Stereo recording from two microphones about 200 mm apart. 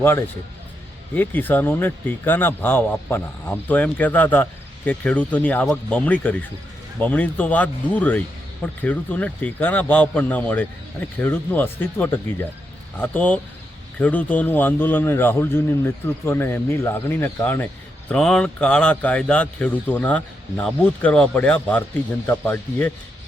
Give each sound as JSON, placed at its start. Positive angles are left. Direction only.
{"t": 0.0, "sound": "a man's voice", "side_deg": 10}